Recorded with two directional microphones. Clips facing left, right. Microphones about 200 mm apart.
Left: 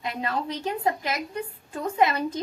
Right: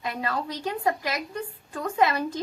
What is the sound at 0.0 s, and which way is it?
A woman's voice, 20° left (ahead or behind).